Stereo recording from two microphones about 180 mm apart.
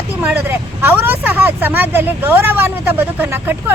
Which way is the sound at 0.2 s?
10° right (ahead or behind).